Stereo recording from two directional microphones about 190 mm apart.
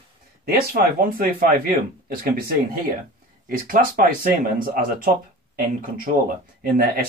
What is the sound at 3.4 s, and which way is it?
Speech, 45° right (ahead or behind).